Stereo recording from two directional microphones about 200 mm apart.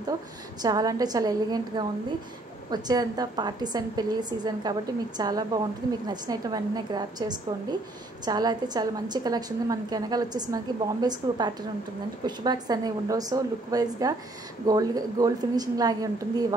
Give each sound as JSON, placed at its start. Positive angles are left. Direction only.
{"t": 0.6, "sound": "a woman's voice", "side_deg": -20}